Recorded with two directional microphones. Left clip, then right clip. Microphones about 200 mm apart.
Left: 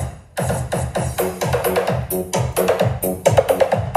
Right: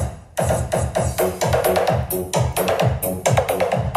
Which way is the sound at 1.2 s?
Centre (ahead or behind).